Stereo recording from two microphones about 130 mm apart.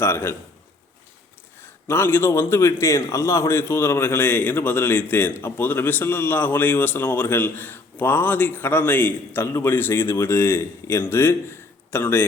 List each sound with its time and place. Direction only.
0.0 s a man's voice: 20° left (ahead or behind)
1.9 s a man's voice: 15° left (ahead or behind)